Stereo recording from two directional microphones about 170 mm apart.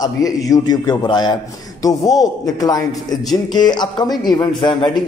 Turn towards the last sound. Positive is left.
turn(degrees=30)  # may be behind; listen again after turning